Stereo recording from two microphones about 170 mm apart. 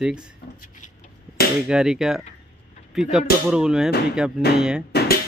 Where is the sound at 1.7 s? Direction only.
5° right (ahead or behind).